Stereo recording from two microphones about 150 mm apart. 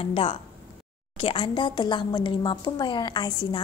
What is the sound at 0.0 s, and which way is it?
A woman's voice, 40° left (ahead or behind).